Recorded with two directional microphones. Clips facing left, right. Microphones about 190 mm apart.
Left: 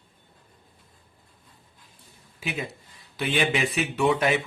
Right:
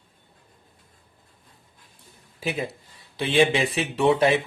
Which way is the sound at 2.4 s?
35° right (ahead or behind).